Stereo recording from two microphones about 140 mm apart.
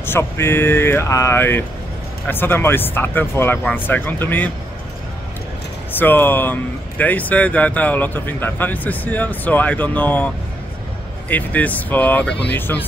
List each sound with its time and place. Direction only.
0.0 s speech: 15° left (ahead or behind)
5.9 s speech: 15° left (ahead or behind)